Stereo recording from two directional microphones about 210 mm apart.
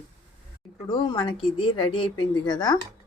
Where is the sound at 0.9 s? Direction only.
20° left (ahead or behind).